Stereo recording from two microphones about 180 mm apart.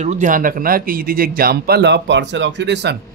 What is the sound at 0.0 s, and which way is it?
Speech, 40° right (ahead or behind).